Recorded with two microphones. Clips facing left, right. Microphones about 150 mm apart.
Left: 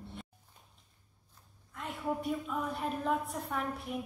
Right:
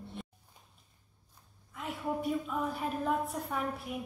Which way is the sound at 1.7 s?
Centre (ahead or behind).